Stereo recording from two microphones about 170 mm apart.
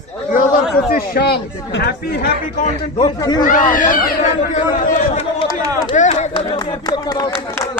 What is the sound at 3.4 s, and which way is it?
A man's voice, 50° left (ahead or behind).